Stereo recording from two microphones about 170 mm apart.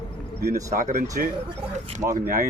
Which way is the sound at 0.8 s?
50° right (ahead or behind).